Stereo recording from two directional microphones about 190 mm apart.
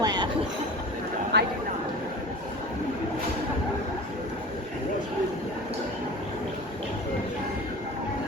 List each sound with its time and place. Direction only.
0.0 s train: 20° right (ahead or behind)
1.3 s speech: 65° right (ahead or behind)